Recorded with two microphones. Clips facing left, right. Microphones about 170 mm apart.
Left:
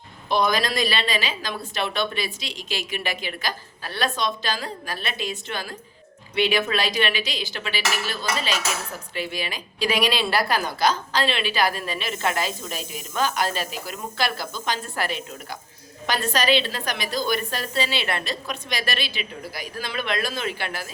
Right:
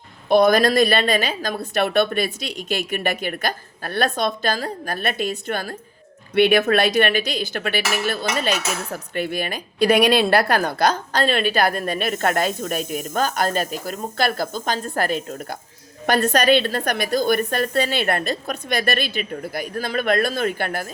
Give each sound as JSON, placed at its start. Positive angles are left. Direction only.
{"t": 0.3, "sound": "a woman's voice", "side_deg": -55}
{"t": 16.0, "sound": "a woman's voice", "side_deg": -55}